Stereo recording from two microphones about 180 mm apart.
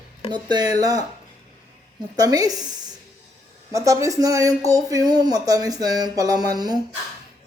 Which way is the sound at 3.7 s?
15° right (ahead or behind).